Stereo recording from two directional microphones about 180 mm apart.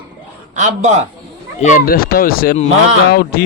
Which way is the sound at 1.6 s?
50° left (ahead or behind).